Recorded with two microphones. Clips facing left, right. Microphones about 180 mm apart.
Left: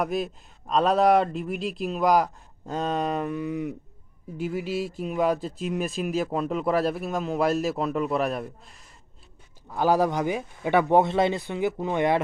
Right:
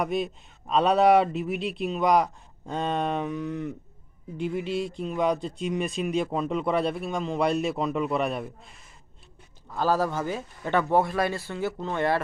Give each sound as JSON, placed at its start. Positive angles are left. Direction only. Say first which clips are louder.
{"t": 0.0, "sound": "speech", "louder": "even", "side_deg": 0}
{"t": 9.7, "sound": "speech", "louder": "left 3 dB", "side_deg": 15}